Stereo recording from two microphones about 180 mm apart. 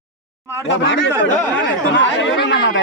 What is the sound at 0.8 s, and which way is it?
Speech, 90° left.